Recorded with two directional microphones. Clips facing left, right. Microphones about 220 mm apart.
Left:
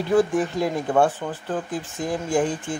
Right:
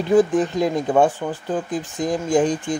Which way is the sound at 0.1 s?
15° right (ahead or behind).